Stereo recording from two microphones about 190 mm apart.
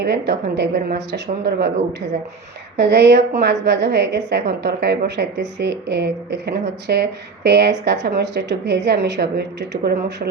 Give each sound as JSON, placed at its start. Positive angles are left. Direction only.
{"t": 0.0, "sound": "a woman's voice", "side_deg": -60}
{"t": 2.7, "sound": "a woman's voice", "side_deg": -60}